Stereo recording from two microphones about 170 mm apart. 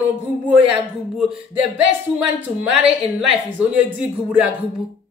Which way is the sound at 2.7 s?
5° right (ahead or behind).